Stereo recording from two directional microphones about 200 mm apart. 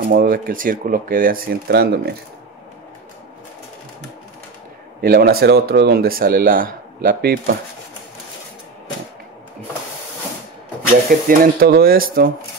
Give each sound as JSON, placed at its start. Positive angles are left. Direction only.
{"t": 0.0, "sound": "speech", "side_deg": -50}
{"t": 5.0, "sound": "speech", "side_deg": -50}
{"t": 10.9, "sound": "speech", "side_deg": -45}